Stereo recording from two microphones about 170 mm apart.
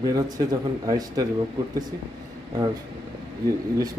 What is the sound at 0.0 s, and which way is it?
Speech, 20° right (ahead or behind).